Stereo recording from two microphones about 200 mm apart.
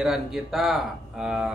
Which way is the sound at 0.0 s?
Centre (ahead or behind).